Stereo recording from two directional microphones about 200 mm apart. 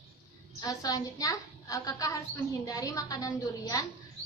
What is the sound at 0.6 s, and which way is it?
A woman's voice, 15° left (ahead or behind).